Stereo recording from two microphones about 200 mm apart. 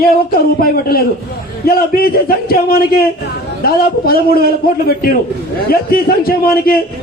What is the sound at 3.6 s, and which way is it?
A man's voice, 50° left (ahead or behind).